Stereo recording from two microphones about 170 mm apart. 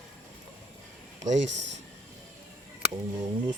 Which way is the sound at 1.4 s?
90° right.